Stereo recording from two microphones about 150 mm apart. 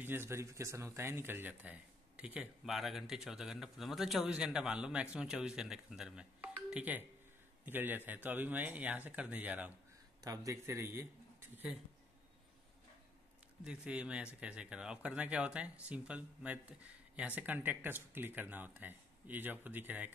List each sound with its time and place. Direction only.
0.0 s speech: 15° right (ahead or behind)
10.2 s a man's voice: 20° right (ahead or behind)
13.7 s speech: 5° right (ahead or behind)